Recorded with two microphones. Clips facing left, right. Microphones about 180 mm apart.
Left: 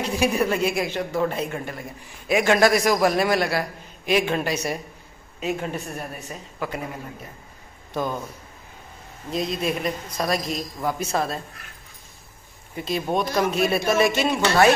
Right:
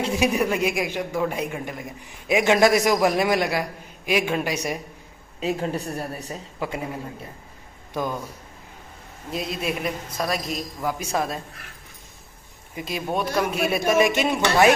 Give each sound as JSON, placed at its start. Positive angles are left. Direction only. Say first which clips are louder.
{"t": 0.0, "sound": "a man's voice", "louder": "even", "side_deg": -20}
{"t": 5.4, "sound": "a woman's voice", "louder": "right 2 dB", "side_deg": -30}
{"t": 9.3, "sound": "a man's voice", "louder": "left 2 dB", "side_deg": -5}
{"t": 12.7, "sound": "a man's voice", "louder": "left 2 dB", "side_deg": -10}